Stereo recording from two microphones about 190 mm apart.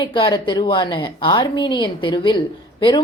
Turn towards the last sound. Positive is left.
turn(degrees=25)  # may be behind; listen again after turning